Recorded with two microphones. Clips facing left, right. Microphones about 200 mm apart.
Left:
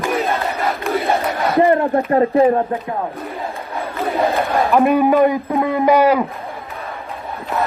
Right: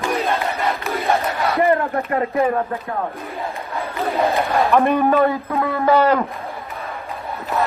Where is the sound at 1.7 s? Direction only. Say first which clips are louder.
Left 4 dB; 30° left (ahead or behind).